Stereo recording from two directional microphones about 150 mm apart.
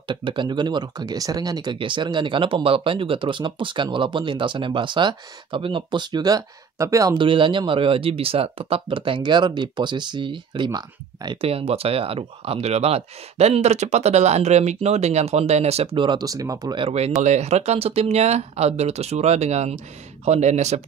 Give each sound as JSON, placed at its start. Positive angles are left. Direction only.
{"t": 0.1, "sound": "speech", "side_deg": -35}
{"t": 7.2, "sound": "speech", "side_deg": -35}
{"t": 11.4, "sound": "speech", "side_deg": -40}